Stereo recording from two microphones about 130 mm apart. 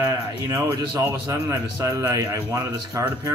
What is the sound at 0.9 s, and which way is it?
A man's voice, 20° right (ahead or behind).